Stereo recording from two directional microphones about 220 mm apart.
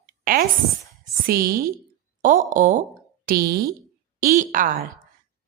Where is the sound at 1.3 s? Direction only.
40° right (ahead or behind).